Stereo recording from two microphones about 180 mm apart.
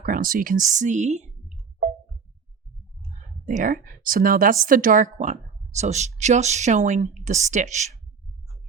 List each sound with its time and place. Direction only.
0.0 s speech: 50° right (ahead or behind)
3.4 s a woman's voice: 45° right (ahead or behind)